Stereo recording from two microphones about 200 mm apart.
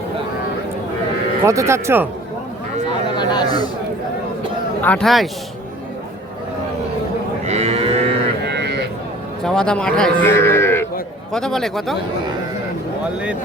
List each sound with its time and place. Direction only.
1.5 s speech: 15° right (ahead or behind)
3.2 s a sound: 20° left (ahead or behind)
4.8 s a man's voice: 5° left (ahead or behind)
7.4 s moo: 30° right (ahead or behind)
8.4 s a sound: 55° right (ahead or behind)
9.4 s a man's voice: 5° left (ahead or behind)